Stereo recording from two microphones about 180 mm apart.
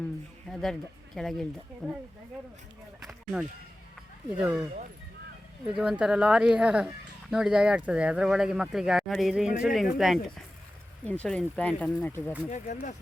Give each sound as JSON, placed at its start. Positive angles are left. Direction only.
{"t": 0.5, "sound": "speech", "side_deg": 0}
{"t": 3.0, "sound": "a sound", "side_deg": 0}
{"t": 4.3, "sound": "speech", "side_deg": -10}
{"t": 5.6, "sound": "speech", "side_deg": -5}
{"t": 12.5, "sound": "speech", "side_deg": 45}